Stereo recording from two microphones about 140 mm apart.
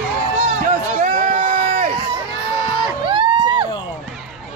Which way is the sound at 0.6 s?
65° right (ahead or behind).